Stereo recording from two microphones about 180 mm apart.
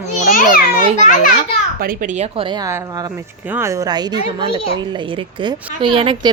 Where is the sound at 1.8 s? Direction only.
50° right (ahead or behind).